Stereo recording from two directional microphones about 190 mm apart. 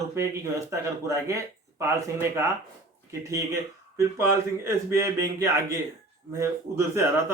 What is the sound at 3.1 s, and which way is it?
Speech, 15° right (ahead or behind).